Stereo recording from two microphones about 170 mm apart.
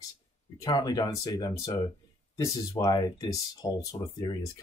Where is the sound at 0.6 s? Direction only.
25° left (ahead or behind).